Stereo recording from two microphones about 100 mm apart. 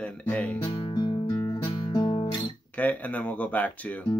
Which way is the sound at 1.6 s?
50° left (ahead or behind).